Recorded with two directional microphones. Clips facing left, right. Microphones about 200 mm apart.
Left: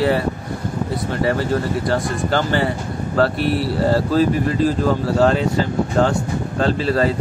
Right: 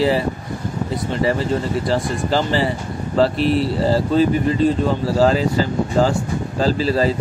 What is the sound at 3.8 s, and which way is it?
Speech, centre (ahead or behind).